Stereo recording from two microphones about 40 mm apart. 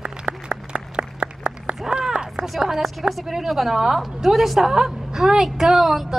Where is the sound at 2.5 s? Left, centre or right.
Centre.